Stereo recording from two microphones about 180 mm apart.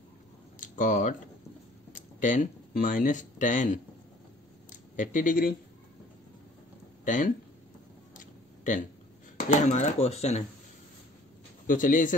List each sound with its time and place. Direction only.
0.6 s a sound: 45° left (ahead or behind)
1.9 s speech: 45° left (ahead or behind)
4.6 s a sound: 45° left (ahead or behind)
7.1 s speech: 45° left (ahead or behind)
9.5 s speech: 40° left (ahead or behind)
11.6 s speech: 50° left (ahead or behind)